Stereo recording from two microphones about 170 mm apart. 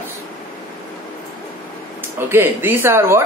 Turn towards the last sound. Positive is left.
turn(degrees=-15)  # may be behind; listen again after turning